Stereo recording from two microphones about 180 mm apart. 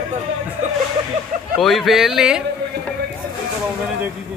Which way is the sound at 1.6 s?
Centre (ahead or behind).